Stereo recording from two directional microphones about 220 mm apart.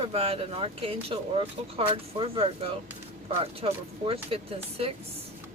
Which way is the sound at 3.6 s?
25° right (ahead or behind).